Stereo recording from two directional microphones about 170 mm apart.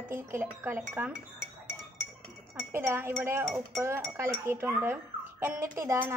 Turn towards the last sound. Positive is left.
turn(degrees=-15)  # may be behind; listen again after turning